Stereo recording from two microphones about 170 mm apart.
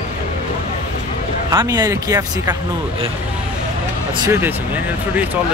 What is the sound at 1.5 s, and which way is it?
Speech, 20° right (ahead or behind).